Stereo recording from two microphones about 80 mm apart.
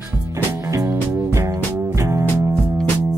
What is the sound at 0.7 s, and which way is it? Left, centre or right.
Music, right.